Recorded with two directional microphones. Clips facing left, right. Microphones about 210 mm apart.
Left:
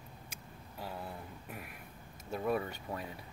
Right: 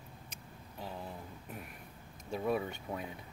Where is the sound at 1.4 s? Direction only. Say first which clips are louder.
Even; 5° left (ahead or behind).